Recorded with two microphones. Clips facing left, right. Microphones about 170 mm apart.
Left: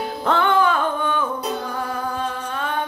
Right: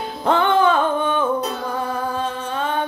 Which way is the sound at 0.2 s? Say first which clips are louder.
Right 2 dB; 20° right (ahead or behind).